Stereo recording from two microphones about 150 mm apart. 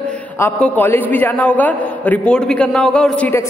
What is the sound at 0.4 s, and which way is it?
A man's voice, 10° left (ahead or behind).